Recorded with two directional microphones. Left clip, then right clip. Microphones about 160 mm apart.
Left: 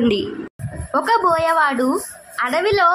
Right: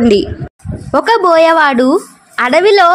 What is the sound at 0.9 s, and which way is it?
A woman's voice, 35° right (ahead or behind).